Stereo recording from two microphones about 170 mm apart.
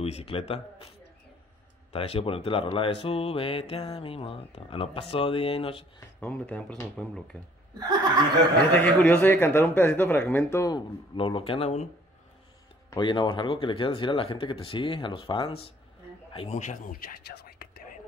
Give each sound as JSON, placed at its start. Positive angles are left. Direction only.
{"t": 0.0, "sound": "speech", "side_deg": 35}
{"t": 1.9, "sound": "speech", "side_deg": 35}
{"t": 6.1, "sound": "speech", "side_deg": 5}
{"t": 7.8, "sound": "speech", "side_deg": -25}
{"t": 8.7, "sound": "speech", "side_deg": 10}
{"t": 11.1, "sound": "speech", "side_deg": 30}
{"t": 12.9, "sound": "speech", "side_deg": 25}
{"t": 16.5, "sound": "speech", "side_deg": 50}
{"t": 17.3, "sound": "whispering", "side_deg": 70}